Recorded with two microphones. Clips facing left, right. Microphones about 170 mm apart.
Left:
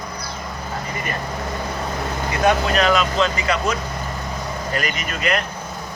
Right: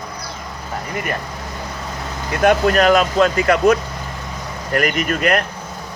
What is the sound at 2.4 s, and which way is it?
Speech, 50° right (ahead or behind).